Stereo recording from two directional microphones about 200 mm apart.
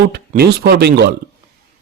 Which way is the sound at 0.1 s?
55° right (ahead or behind).